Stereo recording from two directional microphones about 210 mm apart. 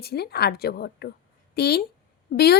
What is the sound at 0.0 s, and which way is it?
Speech, 50° left (ahead or behind).